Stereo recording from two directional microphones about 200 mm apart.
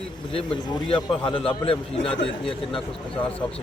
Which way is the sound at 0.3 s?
25° left (ahead or behind).